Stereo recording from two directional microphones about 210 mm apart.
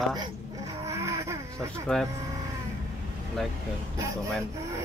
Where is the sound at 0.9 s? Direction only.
15° right (ahead or behind).